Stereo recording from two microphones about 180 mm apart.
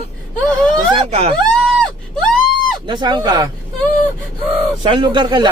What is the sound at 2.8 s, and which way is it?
Speech, 25° right (ahead or behind).